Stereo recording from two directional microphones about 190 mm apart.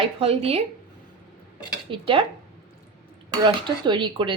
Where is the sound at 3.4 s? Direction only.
25° right (ahead or behind).